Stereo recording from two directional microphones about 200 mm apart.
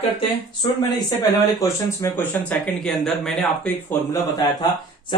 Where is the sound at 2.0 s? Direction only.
10° left (ahead or behind).